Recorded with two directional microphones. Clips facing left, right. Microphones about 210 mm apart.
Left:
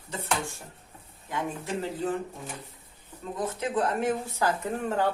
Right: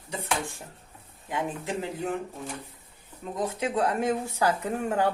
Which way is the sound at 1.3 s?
15° right (ahead or behind).